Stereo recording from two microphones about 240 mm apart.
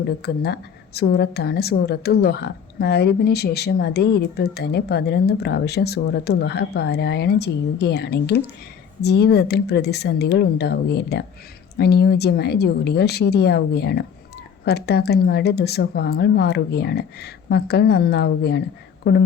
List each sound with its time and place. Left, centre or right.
0.2 s a woman's voice: left